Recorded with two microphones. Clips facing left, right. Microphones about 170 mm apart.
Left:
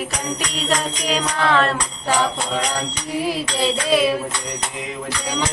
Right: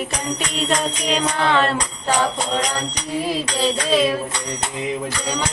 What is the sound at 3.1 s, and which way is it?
Music, 10° left (ahead or behind).